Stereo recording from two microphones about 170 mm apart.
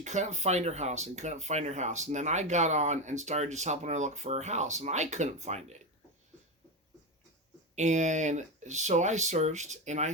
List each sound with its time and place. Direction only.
0.0 s speech: 45° right (ahead or behind)
7.8 s speech: 45° right (ahead or behind)